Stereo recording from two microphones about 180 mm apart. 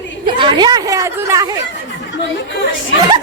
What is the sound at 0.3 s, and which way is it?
Speech, 25° right (ahead or behind).